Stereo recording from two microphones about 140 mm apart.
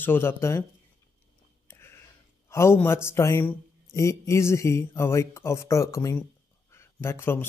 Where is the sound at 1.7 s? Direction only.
15° left (ahead or behind).